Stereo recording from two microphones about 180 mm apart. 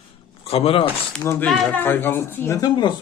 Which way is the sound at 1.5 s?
Centre (ahead or behind).